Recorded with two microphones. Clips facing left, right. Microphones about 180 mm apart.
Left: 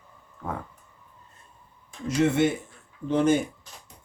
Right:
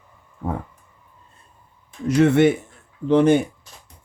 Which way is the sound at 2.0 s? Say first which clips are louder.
Right 7 dB; 65° right (ahead or behind).